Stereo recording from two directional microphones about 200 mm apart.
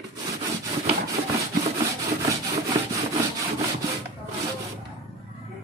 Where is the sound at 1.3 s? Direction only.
15° right (ahead or behind).